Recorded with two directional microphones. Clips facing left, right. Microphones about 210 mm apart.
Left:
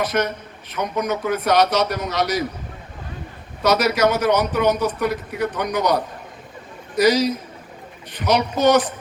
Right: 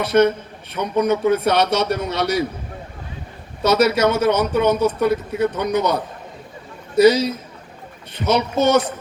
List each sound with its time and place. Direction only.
0.0 s a man's voice: 30° right (ahead or behind)
3.6 s a man's voice: 25° right (ahead or behind)